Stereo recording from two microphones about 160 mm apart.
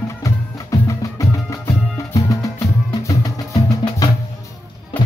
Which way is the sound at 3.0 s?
20° left (ahead or behind).